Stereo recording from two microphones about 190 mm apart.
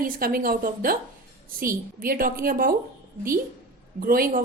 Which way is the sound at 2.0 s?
50° right (ahead or behind).